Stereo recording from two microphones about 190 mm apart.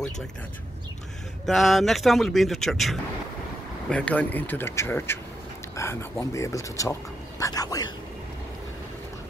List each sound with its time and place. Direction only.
1.4 s speech: centre (ahead or behind); by 7.9 s 20° left (ahead or behind)